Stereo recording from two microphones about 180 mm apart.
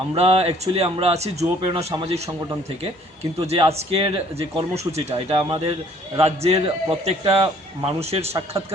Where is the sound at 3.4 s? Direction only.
35° right (ahead or behind).